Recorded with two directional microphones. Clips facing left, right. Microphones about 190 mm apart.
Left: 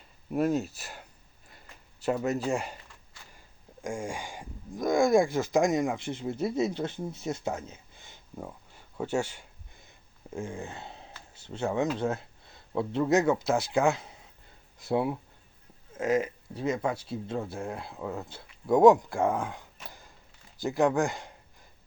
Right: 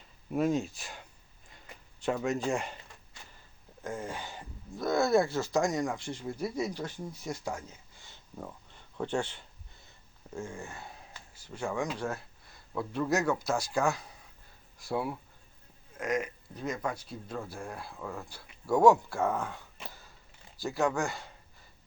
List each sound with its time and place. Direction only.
0.3 s speech: centre (ahead or behind)
3.8 s speech: 10° left (ahead or behind)